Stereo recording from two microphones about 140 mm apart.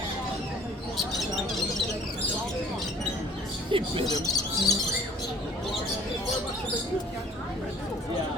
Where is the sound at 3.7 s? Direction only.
40° right (ahead or behind).